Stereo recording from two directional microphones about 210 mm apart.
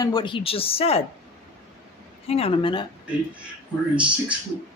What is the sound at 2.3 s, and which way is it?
Speech, 25° left (ahead or behind).